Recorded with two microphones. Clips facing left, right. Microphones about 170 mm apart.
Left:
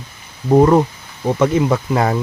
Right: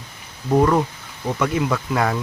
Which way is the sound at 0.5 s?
25° left (ahead or behind).